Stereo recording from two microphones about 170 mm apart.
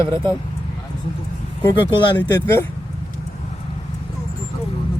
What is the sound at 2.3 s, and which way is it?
Speech, 15° left (ahead or behind).